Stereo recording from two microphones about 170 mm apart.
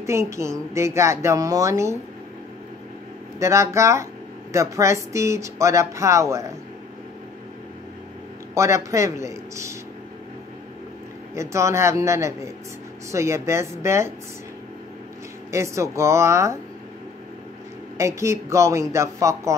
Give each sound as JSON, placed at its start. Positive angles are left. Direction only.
{"t": 0.0, "sound": "speech", "side_deg": -15}
{"t": 3.3, "sound": "speech", "side_deg": -15}
{"t": 8.5, "sound": "speech", "side_deg": -15}
{"t": 11.3, "sound": "speech", "side_deg": -15}
{"t": 15.5, "sound": "speech", "side_deg": -15}
{"t": 17.9, "sound": "speech", "side_deg": -15}